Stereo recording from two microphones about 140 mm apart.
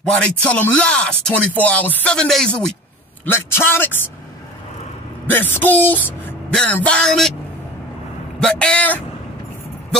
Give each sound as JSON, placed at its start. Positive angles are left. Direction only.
{"t": 0.4, "sound": "speech", "side_deg": 10}
{"t": 3.3, "sound": "speech", "side_deg": 15}
{"t": 5.2, "sound": "speech", "side_deg": 15}
{"t": 8.4, "sound": "speech", "side_deg": 5}